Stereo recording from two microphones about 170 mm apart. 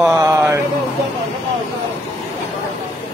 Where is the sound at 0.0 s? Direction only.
20° right (ahead or behind).